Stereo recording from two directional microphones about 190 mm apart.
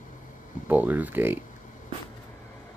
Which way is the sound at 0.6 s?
10° right (ahead or behind).